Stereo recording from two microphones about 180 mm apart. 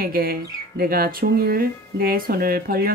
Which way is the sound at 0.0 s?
55° right (ahead or behind).